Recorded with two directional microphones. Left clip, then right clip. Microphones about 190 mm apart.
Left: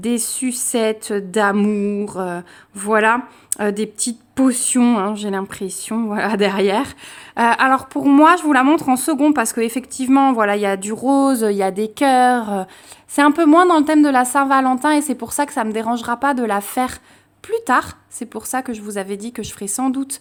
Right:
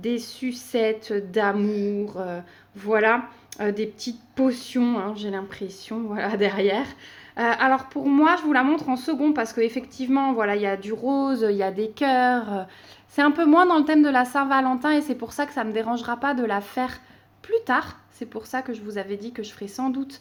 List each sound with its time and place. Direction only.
0.0 s a woman's voice: 45° left (ahead or behind)